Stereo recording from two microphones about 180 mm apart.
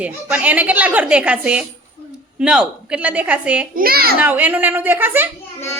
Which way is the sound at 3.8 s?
55° right (ahead or behind).